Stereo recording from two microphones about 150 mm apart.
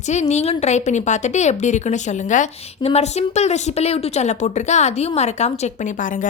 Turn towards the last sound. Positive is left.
turn(degrees=60)  # may be behind; listen again after turning